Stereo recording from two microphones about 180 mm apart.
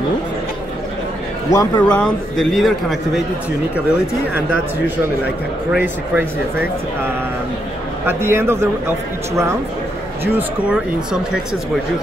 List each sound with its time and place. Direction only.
1.5 s speech: 15° left (ahead or behind)
1.9 s a man's voice: 5° left (ahead or behind)
5.7 s speech: 5° right (ahead or behind)
8.1 s speech: 15° right (ahead or behind)